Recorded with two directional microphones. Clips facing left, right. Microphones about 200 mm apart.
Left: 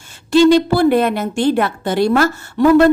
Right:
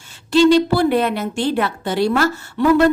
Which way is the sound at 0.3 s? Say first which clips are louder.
Left 2 dB; 50° left (ahead or behind).